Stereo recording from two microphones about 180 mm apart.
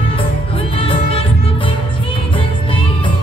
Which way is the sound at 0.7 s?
30° left (ahead or behind).